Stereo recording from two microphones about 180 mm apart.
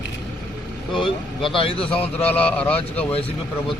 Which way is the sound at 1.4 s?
30° left (ahead or behind).